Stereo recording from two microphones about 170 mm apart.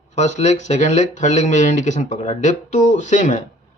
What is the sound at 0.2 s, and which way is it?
Speech, 45° left (ahead or behind).